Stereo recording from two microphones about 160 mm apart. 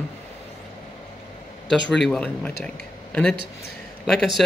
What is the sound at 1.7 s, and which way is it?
Speech, centre (ahead or behind).